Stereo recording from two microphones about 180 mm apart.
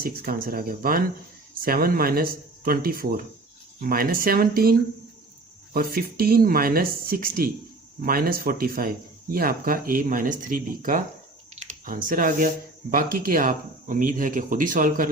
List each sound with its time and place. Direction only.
0.0 s speech: 55° right (ahead or behind)